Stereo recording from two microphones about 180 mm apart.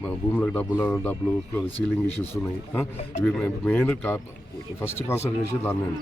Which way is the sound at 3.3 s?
10° left (ahead or behind).